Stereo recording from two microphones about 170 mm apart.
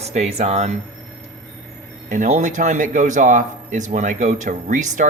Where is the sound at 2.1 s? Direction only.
45° right (ahead or behind).